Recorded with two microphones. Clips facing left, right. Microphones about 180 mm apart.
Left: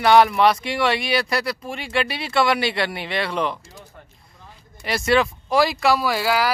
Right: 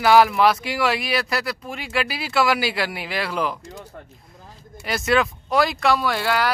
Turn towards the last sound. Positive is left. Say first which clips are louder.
# left 1 dB
turn(degrees=5)  # may be behind; listen again after turning